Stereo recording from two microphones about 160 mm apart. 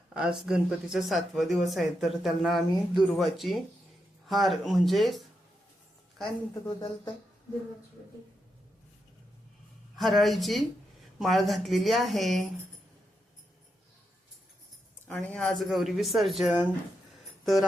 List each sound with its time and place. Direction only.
0.1 s speech: 5° right (ahead or behind)
6.5 s speech: 25° left (ahead or behind)
9.9 s speech: centre (ahead or behind)
15.0 s speech: 5° left (ahead or behind)
17.4 s music: centre (ahead or behind)